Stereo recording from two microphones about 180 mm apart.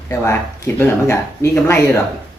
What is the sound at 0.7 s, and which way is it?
Speech, 15° left (ahead or behind).